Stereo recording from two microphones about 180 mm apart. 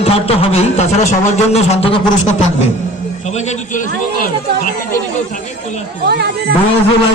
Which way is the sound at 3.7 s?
50° left (ahead or behind).